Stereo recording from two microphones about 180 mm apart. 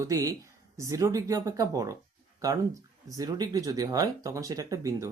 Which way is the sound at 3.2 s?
20° right (ahead or behind).